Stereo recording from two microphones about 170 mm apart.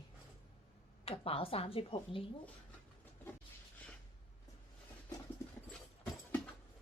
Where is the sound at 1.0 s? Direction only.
35° left (ahead or behind).